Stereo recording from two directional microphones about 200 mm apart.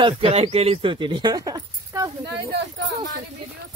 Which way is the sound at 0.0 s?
30° right (ahead or behind).